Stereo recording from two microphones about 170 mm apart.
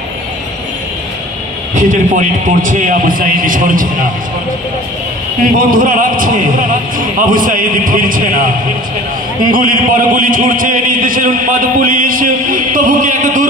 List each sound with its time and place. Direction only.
1.8 s a man's voice: 50° right (ahead or behind)
5.6 s speech: 55° right (ahead or behind)
9.5 s a man's voice: 55° right (ahead or behind)